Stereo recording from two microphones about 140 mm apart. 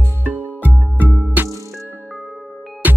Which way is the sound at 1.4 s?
10° right (ahead or behind).